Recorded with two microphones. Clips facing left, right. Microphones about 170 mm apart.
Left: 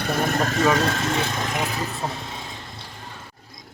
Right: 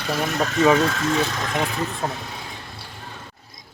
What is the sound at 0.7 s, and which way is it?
Speech, 30° left (ahead or behind).